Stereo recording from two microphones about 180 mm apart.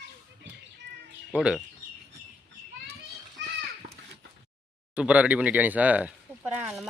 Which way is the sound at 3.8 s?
45° right (ahead or behind).